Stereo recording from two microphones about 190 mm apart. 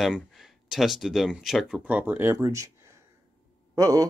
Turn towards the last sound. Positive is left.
turn(degrees=-15)  # may be behind; listen again after turning